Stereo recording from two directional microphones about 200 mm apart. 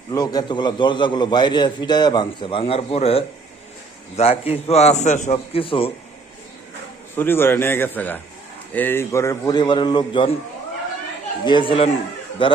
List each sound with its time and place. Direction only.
0.1 s a man's voice: 20° left (ahead or behind)
7.2 s a man's voice: 10° left (ahead or behind)
11.4 s a man's voice: 25° left (ahead or behind)